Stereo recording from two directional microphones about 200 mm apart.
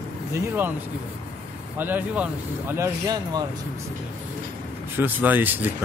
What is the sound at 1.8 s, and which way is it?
Speech, 10° right (ahead or behind).